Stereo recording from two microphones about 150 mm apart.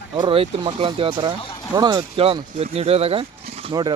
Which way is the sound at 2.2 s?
40° right (ahead or behind).